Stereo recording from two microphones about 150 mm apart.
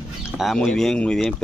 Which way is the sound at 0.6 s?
5° left (ahead or behind).